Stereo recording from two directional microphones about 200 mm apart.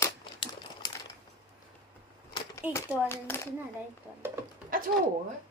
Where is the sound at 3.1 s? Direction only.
10° left (ahead or behind).